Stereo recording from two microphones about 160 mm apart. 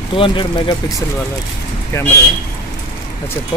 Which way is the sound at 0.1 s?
30° left (ahead or behind).